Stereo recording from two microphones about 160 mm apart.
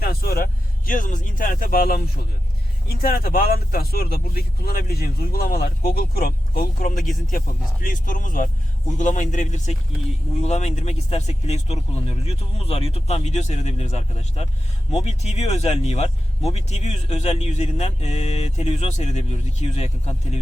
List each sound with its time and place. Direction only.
0.0 s vehicle: 70° left (ahead or behind)
3.0 s speech: 70° left (ahead or behind); by 20.4 s 45° left (ahead or behind)